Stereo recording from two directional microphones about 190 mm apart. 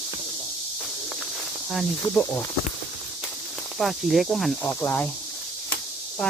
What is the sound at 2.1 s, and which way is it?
Speech, 15° left (ahead or behind).